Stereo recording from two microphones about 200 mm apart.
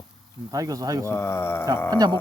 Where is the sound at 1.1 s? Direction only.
15° left (ahead or behind).